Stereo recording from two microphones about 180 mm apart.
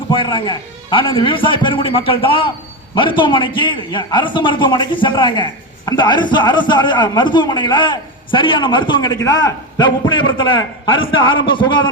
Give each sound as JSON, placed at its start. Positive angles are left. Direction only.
{"t": 0.1, "sound": "a man's voice", "side_deg": 30}